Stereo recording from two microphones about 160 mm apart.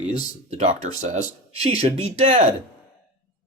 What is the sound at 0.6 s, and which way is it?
Speech, 50° right (ahead or behind).